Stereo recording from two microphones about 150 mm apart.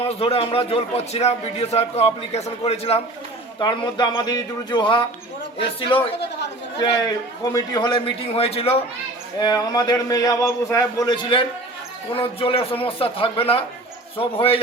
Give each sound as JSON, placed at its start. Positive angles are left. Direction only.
{"t": 0.1, "sound": "a man's voice", "side_deg": 40}
{"t": 3.6, "sound": "speech", "side_deg": 30}
{"t": 7.5, "sound": "speech", "side_deg": 25}
{"t": 9.4, "sound": "a man's voice", "side_deg": 25}